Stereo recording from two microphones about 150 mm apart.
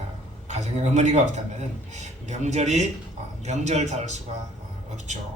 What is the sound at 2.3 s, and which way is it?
A woman's voice, 50° right (ahead or behind).